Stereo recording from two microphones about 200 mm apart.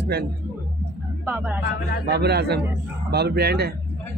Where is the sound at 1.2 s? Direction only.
10° right (ahead or behind).